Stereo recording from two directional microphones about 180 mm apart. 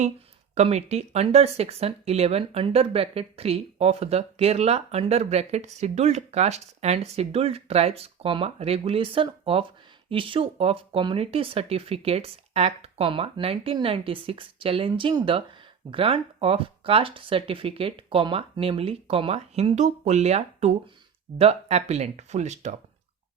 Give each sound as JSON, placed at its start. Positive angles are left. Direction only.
{"t": 0.5, "sound": "speech", "side_deg": -35}